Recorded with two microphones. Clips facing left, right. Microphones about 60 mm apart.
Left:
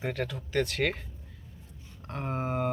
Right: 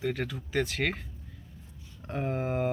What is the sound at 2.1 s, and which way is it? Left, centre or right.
Speech, centre.